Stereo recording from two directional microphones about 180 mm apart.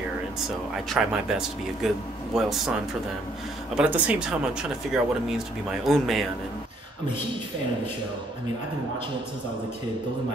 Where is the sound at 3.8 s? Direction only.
5° right (ahead or behind).